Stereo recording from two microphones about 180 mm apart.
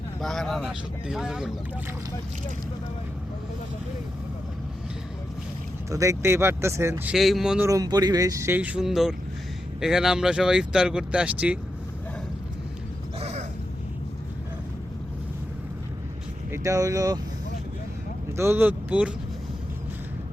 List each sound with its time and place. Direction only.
0.2 s speech: centre (ahead or behind)
5.9 s speech: 15° right (ahead or behind)
7.1 s speech: centre (ahead or behind)
7.7 s speech: 20° right (ahead or behind)
13.1 s a sound: 35° right (ahead or behind)
16.5 s speech: 15° right (ahead or behind)
18.3 s speech: 10° right (ahead or behind)